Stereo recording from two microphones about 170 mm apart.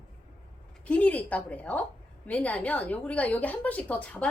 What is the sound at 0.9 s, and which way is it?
A woman's voice, 10° left (ahead or behind).